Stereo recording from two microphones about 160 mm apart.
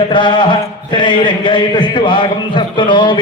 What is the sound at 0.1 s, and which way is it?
Speech, 30° left (ahead or behind).